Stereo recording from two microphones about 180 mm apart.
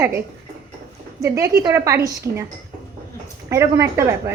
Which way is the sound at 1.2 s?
15° right (ahead or behind).